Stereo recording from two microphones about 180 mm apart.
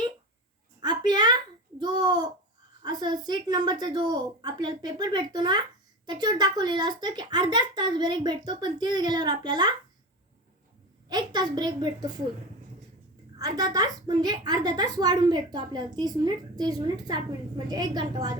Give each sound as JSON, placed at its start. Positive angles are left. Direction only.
{"t": 0.8, "sound": "a sound", "side_deg": -25}
{"t": 1.8, "sound": "a child's voice", "side_deg": -25}
{"t": 11.1, "sound": "a woman's voice", "side_deg": -25}
{"t": 13.3, "sound": "a woman's voice", "side_deg": -20}